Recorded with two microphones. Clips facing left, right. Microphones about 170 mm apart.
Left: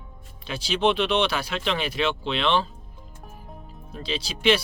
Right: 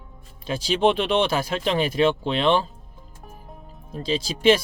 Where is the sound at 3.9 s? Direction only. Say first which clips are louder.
Right 5 dB; 45° right (ahead or behind).